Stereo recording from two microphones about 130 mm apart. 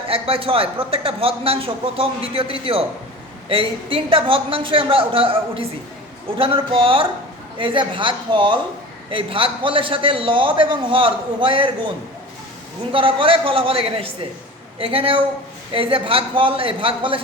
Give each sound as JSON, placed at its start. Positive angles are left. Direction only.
{"t": 0.1, "sound": "a man's voice", "side_deg": -45}
{"t": 12.9, "sound": "a man's voice", "side_deg": -45}